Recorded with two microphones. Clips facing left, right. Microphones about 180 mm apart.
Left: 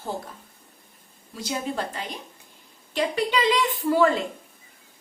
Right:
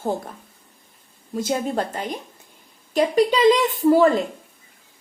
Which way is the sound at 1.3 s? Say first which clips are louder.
Right 6 dB; 50° right (ahead or behind).